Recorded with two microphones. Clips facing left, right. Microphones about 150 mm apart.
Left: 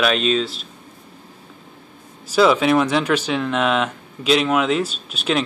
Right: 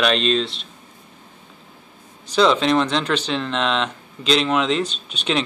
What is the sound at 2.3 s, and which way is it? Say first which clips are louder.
Speech: left 2 dB; 5° left (ahead or behind).